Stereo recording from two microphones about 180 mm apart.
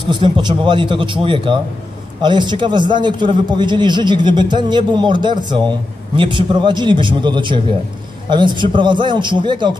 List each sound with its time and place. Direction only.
0.0 s a man's voice: 25° right (ahead or behind)